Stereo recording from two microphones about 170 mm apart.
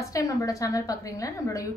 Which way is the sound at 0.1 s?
20° left (ahead or behind).